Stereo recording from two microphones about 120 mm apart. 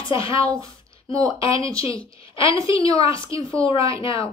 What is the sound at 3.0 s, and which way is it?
Speech, 45° left (ahead or behind).